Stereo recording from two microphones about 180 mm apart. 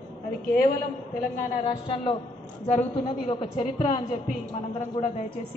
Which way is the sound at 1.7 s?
30° left (ahead or behind).